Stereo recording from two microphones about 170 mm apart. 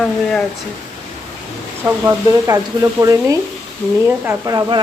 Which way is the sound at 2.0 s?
20° right (ahead or behind).